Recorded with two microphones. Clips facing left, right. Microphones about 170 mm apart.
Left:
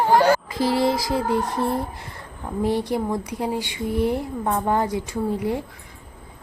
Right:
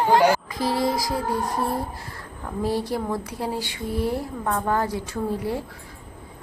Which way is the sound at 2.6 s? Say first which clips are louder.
Left 2 dB; 20° left (ahead or behind).